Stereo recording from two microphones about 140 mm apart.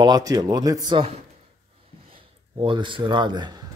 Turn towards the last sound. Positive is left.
turn(degrees=-30)  # may be behind; listen again after turning